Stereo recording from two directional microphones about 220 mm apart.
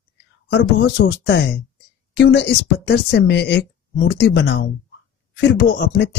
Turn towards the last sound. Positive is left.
turn(degrees=50)  # may be behind; listen again after turning